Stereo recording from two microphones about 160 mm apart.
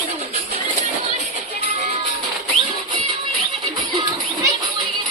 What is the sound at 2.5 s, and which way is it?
Music, centre (ahead or behind).